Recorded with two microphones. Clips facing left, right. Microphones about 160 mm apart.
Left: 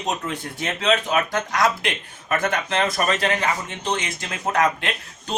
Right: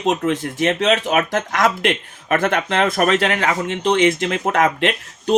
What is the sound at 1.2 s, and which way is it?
Speech, 50° right (ahead or behind).